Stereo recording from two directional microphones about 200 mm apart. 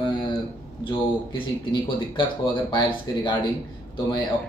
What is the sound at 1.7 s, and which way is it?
Speech, 20° left (ahead or behind).